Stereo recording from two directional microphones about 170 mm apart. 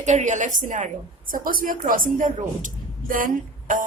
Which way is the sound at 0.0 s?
45° right (ahead or behind).